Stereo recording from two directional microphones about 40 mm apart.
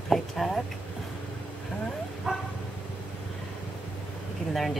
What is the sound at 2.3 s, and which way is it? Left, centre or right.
Bow-wow, centre.